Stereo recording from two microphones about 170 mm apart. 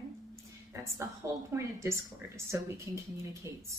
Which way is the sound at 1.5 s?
15° right (ahead or behind).